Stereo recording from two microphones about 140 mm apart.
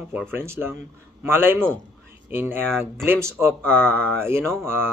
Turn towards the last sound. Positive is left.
turn(degrees=-15)  # may be behind; listen again after turning